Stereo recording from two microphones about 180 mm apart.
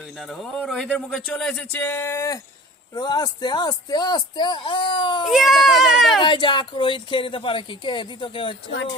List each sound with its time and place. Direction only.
0.2 s speech: centre (ahead or behind); by 5.2 s 25° left (ahead or behind)
5.2 s speech: centre (ahead or behind)
6.2 s speech: 25° left (ahead or behind)